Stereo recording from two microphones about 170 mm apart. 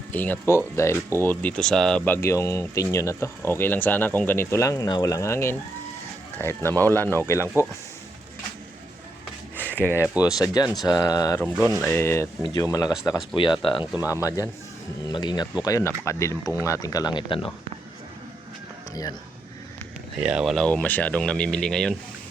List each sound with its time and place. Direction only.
0.1 s speech: 10° left (ahead or behind)
7.4 s speech: 15° right (ahead or behind)
9.6 s a sound: 10° left (ahead or behind)
10.2 s speech: 20° left (ahead or behind)
14.1 s speech: 20° left (ahead or behind)
20.2 s speech: 5° right (ahead or behind)